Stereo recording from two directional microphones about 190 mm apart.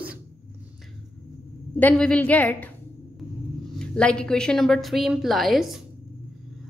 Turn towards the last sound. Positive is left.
turn(degrees=0)  # may be behind; listen again after turning